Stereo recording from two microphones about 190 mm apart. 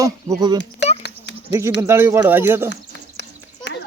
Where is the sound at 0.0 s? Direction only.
20° right (ahead or behind).